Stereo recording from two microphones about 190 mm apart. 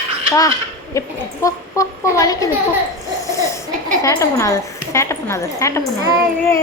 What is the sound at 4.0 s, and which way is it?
A woman's voice, 15° left (ahead or behind).